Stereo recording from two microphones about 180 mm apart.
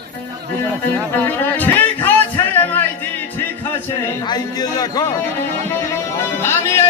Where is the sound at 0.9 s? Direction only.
10° left (ahead or behind).